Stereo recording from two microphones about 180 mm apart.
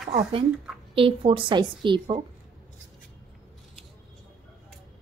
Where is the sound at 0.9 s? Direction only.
30° right (ahead or behind).